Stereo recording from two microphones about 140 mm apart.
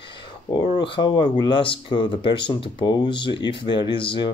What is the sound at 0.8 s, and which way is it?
Speech, 35° left (ahead or behind).